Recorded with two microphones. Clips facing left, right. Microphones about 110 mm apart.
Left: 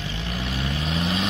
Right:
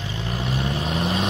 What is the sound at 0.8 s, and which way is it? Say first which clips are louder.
Vehicle: even; 45° right (ahead or behind).